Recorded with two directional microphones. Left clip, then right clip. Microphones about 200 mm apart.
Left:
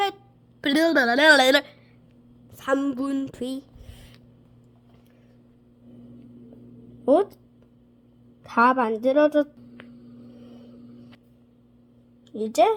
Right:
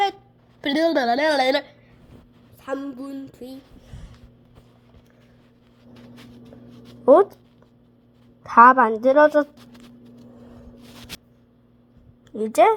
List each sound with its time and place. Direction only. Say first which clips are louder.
0.6 s a woman's voice: even; 10° left (ahead or behind)
2.6 s speech: left 6 dB; 20° left (ahead or behind)
3.3 s a sound: left 7 dB; 20° left (ahead or behind)
7.0 s speech: right 6 dB; 5° right (ahead or behind)
8.4 s a woman's voice: right 8 dB; 10° right (ahead or behind)
12.3 s a woman's voice: right 4 dB; 10° right (ahead or behind)